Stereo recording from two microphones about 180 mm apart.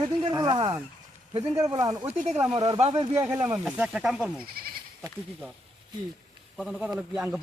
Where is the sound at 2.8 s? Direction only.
35° right (ahead or behind).